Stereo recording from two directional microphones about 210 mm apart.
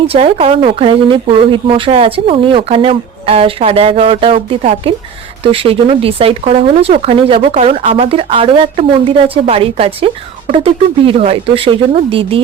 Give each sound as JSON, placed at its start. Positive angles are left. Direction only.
{"t": 0.0, "sound": "speech", "side_deg": -25}